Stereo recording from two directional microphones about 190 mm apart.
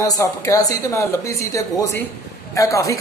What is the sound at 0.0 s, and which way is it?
A man's voice, 20° left (ahead or behind).